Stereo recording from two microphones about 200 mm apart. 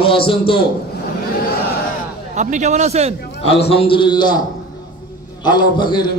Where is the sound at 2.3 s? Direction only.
35° right (ahead or behind).